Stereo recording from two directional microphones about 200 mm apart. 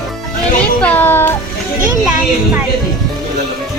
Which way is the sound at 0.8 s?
10° left (ahead or behind).